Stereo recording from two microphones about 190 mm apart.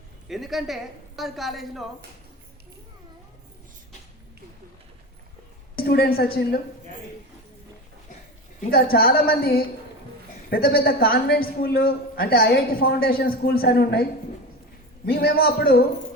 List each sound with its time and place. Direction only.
0.3 s a woman's voice: centre (ahead or behind)
5.7 s a woman's voice: 55° left (ahead or behind)
8.7 s a man's voice: 50° left (ahead or behind)